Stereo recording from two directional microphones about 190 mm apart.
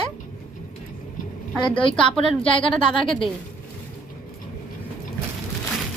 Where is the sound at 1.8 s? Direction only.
25° left (ahead or behind).